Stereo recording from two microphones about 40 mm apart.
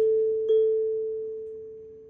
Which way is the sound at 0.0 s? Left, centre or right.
Centre.